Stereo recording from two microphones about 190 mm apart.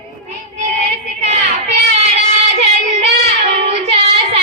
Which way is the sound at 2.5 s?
35° right (ahead or behind).